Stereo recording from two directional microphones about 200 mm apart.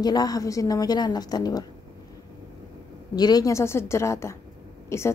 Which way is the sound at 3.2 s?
20° left (ahead or behind).